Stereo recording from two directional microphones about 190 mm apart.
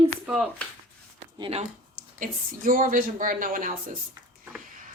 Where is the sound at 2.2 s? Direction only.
45° right (ahead or behind).